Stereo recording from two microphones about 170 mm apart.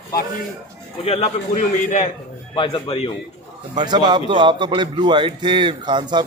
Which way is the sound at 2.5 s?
30° left (ahead or behind).